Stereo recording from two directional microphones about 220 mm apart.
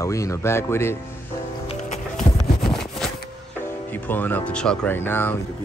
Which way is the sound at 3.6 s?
10° left (ahead or behind).